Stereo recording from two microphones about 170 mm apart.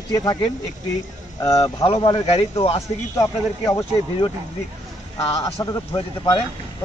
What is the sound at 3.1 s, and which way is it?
Speech, 15° left (ahead or behind).